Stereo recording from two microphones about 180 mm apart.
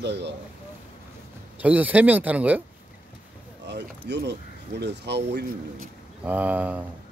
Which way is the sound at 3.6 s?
70° right (ahead or behind).